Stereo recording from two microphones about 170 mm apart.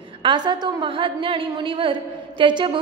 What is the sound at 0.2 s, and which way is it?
A woman's voice, 25° right (ahead or behind).